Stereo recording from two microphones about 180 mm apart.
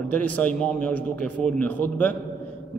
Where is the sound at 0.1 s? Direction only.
10° left (ahead or behind).